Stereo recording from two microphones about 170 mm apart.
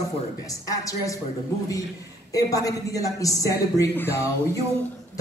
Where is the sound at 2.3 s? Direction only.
20° left (ahead or behind).